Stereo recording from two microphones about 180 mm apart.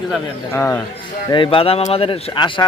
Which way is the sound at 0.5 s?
15° left (ahead or behind).